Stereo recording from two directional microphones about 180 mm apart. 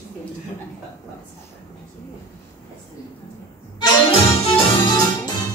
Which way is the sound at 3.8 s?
30° left (ahead or behind).